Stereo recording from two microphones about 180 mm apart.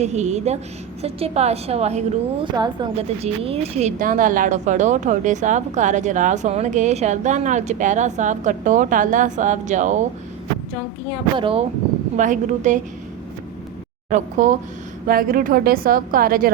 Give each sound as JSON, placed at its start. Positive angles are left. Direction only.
{"t": 0.0, "sound": "speech", "side_deg": -40}
{"t": 2.6, "sound": "a woman's voice", "side_deg": -25}
{"t": 11.3, "sound": "speech", "side_deg": -30}
{"t": 12.1, "sound": "a woman's voice", "side_deg": -45}
{"t": 14.1, "sound": "a woman's voice", "side_deg": -45}